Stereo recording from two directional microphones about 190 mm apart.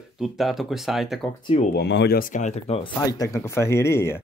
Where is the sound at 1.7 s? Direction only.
65° left (ahead or behind); by 2.9 s 30° left (ahead or behind).